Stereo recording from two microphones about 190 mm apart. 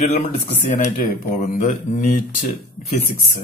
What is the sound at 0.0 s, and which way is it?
Speech, 40° left (ahead or behind).